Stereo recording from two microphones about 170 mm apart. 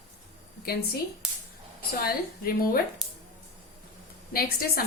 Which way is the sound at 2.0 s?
60° left (ahead or behind).